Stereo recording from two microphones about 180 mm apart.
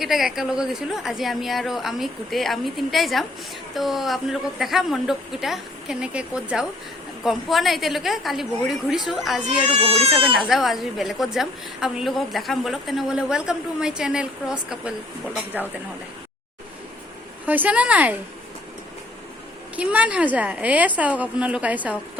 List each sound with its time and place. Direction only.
0.0 s a woman's voice: centre (ahead or behind)
9.8 s speech: 35° right (ahead or behind)
10.3 s a woman's voice: centre (ahead or behind)
17.4 s a woman's voice: 10° right (ahead or behind)
19.7 s a woman's voice: 10° right (ahead or behind)